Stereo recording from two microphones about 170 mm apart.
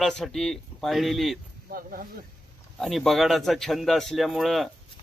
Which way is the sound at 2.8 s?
Centre (ahead or behind).